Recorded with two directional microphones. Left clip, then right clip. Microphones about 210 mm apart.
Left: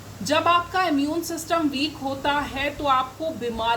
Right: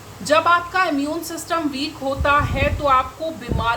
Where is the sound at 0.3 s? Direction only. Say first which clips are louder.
Right 4 dB; 10° right (ahead or behind).